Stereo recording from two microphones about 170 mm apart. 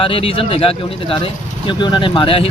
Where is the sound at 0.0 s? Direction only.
30° left (ahead or behind).